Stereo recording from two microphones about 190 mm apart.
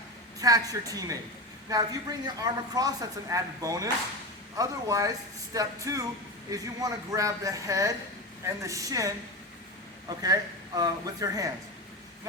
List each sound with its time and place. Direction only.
0.3 s a woman's voice: 20° right (ahead or behind)